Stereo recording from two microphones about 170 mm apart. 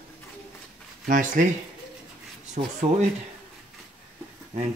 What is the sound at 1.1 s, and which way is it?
Speech, 50° right (ahead or behind).